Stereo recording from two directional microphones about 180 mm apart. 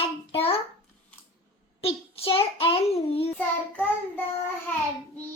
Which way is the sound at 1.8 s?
30° left (ahead or behind).